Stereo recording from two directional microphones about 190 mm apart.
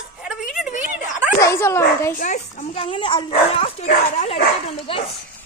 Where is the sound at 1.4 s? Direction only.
15° left (ahead or behind).